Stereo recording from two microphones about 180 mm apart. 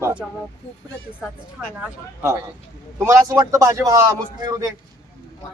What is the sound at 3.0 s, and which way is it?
A man's voice, 15° right (ahead or behind).